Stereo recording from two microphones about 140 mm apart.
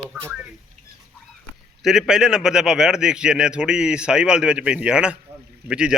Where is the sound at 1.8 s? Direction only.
5° right (ahead or behind).